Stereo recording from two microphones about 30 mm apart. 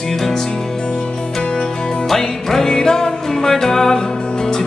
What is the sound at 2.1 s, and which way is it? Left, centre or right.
Music, centre.